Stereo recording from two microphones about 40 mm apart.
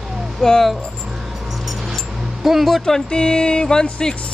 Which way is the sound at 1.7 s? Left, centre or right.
Centre.